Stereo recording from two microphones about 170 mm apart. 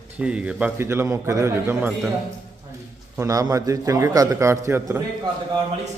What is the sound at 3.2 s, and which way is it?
A man's voice, 20° right (ahead or behind).